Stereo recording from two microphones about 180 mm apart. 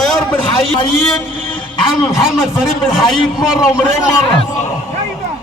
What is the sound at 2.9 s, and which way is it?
Speech, centre (ahead or behind).